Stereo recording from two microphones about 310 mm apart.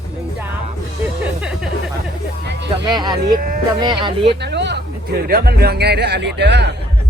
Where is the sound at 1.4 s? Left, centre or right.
Centre.